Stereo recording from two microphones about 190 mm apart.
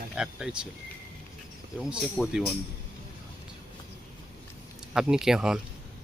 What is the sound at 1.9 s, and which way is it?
Speech, 5° right (ahead or behind).